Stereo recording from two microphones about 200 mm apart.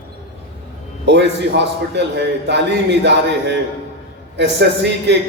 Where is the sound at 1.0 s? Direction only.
60° right (ahead or behind).